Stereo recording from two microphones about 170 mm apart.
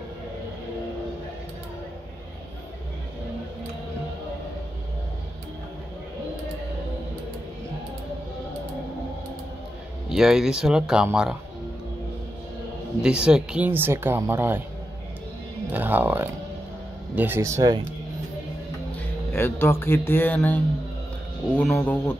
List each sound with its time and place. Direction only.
10.0 s speech: 5° right (ahead or behind)
13.0 s speech: 5° right (ahead or behind)
15.7 s speech: 10° right (ahead or behind)
18.9 s speech: 15° left (ahead or behind)